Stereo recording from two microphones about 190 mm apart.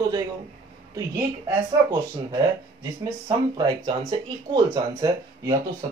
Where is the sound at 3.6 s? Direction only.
20° right (ahead or behind).